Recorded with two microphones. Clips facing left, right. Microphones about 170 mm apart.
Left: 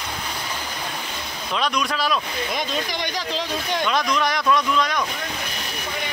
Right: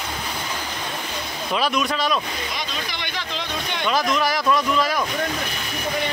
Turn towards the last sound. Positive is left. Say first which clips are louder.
# right 1 dB
turn(degrees=-5)  # may be behind; listen again after turning